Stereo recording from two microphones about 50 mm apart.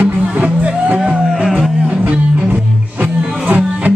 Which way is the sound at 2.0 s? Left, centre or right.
Right.